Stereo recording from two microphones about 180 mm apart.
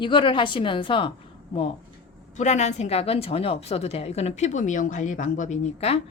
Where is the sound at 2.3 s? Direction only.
40° left (ahead or behind).